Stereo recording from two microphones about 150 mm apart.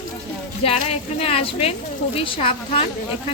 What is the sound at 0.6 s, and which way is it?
Speech, 40° left (ahead or behind).